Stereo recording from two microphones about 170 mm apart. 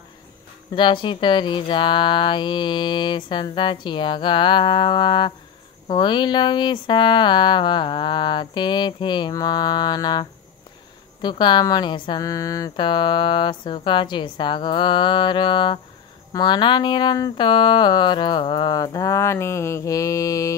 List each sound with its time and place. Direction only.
0.7 s a woman's voice: 30° left (ahead or behind)